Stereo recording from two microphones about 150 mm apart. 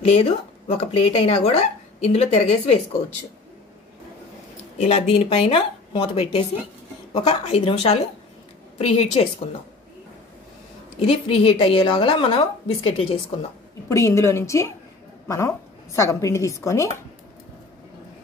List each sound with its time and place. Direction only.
0.0 s speech: 40° left (ahead or behind)
4.7 s a woman's voice: 50° left (ahead or behind)
11.0 s a woman's voice: 40° left (ahead or behind)
13.8 s a woman's voice: 20° left (ahead or behind)